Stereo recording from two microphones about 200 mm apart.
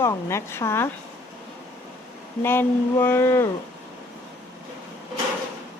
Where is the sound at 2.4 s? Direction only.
10° left (ahead or behind).